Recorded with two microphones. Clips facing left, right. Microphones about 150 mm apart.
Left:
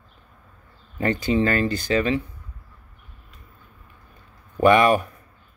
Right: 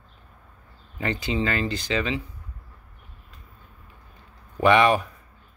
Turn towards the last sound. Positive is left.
turn(degrees=45)  # may be behind; listen again after turning